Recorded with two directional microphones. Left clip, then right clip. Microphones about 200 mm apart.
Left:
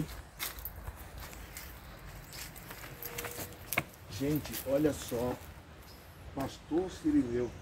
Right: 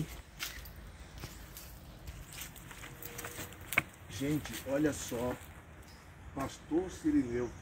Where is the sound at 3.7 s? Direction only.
5° left (ahead or behind).